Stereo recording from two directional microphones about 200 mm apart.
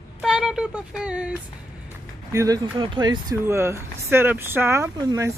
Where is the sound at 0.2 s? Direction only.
Centre (ahead or behind).